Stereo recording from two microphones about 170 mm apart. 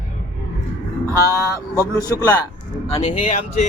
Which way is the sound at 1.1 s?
15° right (ahead or behind).